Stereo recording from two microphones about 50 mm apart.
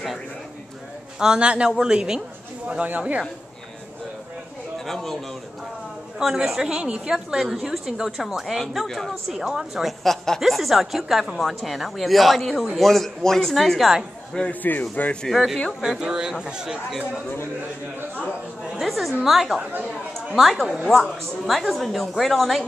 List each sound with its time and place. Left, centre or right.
1.2 s a woman's voice: centre
2.8 s speech: right
4.7 s a man's voice: centre
6.1 s a woman's voice: centre
8.8 s a woman's voice: centre
9.3 s a woman's voice: centre
10.0 s a woman's voice: centre
10.4 s a woman's voice: centre
14.5 s speech: left
15.2 s a woman's voice: centre
15.8 s a woman's voice: centre
18.6 s a woman's voice: centre